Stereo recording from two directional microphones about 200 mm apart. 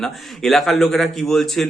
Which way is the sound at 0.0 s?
Centre (ahead or behind).